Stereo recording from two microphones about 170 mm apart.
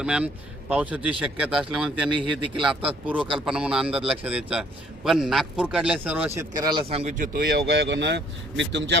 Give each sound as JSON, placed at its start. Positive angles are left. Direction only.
{"t": 0.0, "sound": "a man's voice", "side_deg": -5}
{"t": 2.0, "sound": "a man's voice", "side_deg": -30}
{"t": 2.6, "sound": "a man's voice", "side_deg": -5}
{"t": 6.9, "sound": "speech", "side_deg": -40}
{"t": 7.3, "sound": "speech", "side_deg": -75}